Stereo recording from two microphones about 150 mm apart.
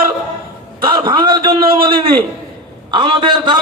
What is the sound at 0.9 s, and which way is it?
Speech, 30° right (ahead or behind).